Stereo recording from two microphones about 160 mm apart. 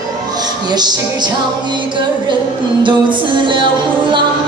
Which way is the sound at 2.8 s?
30° right (ahead or behind).